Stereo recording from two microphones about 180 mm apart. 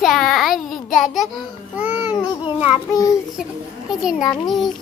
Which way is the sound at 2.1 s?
30° left (ahead or behind).